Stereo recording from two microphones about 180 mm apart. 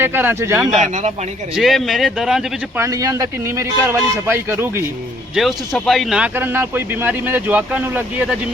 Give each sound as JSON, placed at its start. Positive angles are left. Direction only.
{"t": 0.0, "sound": "speech", "side_deg": -10}
{"t": 0.7, "sound": "speech", "side_deg": -40}
{"t": 1.5, "sound": "speech", "side_deg": 0}
{"t": 2.8, "sound": "speech", "side_deg": -20}
{"t": 5.3, "sound": "speech", "side_deg": 0}